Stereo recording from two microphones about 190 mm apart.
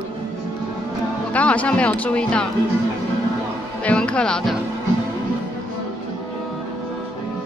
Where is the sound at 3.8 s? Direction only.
5° left (ahead or behind).